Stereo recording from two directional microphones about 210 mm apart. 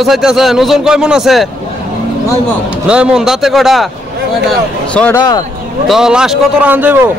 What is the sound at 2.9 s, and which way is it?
Speech, 5° right (ahead or behind).